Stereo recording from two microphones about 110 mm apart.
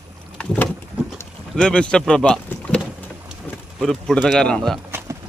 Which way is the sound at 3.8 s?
5° left (ahead or behind).